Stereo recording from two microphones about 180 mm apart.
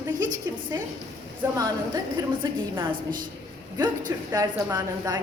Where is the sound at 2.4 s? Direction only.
20° right (ahead or behind).